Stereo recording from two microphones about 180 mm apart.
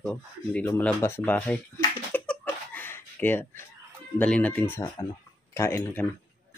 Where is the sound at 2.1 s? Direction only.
10° left (ahead or behind).